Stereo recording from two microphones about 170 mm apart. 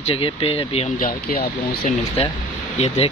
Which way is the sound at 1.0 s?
55° left (ahead or behind).